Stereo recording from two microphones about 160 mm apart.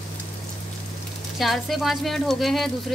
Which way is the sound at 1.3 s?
Centre (ahead or behind).